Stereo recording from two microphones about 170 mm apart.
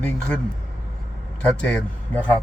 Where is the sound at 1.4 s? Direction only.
5° left (ahead or behind).